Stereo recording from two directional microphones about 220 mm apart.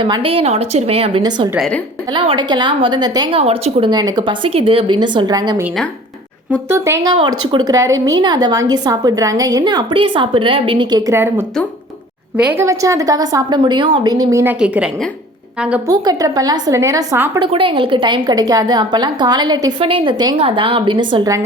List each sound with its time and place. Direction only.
0.0 s a woman's voice: 25° right (ahead or behind)
1.5 s a woman's voice: centre (ahead or behind)
2.1 s a woman's voice: 20° right (ahead or behind)
6.7 s a woman's voice: 10° right (ahead or behind)
15.9 s a woman's voice: 15° right (ahead or behind)
17.4 s a woman's voice: 20° right (ahead or behind)